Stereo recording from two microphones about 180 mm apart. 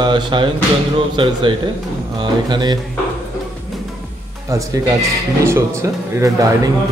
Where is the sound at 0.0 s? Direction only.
25° right (ahead or behind).